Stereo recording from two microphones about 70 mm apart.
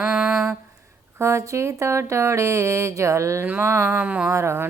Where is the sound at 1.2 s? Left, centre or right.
Right.